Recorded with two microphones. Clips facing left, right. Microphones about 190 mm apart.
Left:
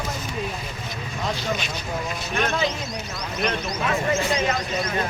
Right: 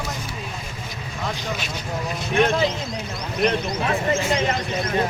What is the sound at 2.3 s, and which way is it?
Speech, 30° right (ahead or behind).